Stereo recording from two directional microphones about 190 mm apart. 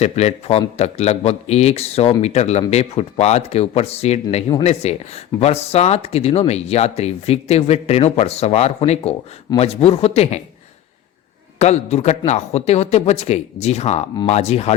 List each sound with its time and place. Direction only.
0.0 s speech: 35° left (ahead or behind)
11.6 s speech: 35° left (ahead or behind)